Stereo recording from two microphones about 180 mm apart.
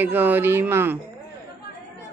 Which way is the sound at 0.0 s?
10° right (ahead or behind).